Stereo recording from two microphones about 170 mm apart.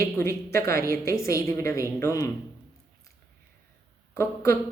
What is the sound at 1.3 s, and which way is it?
Speech, 15° left (ahead or behind).